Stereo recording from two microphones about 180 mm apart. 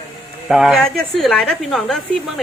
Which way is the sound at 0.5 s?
Centre (ahead or behind).